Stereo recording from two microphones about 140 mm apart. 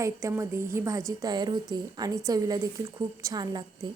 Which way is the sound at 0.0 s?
20° right (ahead or behind).